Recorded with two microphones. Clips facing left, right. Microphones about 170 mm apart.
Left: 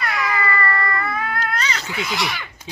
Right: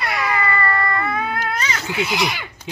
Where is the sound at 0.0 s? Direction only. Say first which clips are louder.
Right 1 dB; 25° right (ahead or behind).